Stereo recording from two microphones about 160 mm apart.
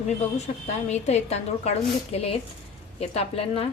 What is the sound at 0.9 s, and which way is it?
A woman's voice, 45° left (ahead or behind).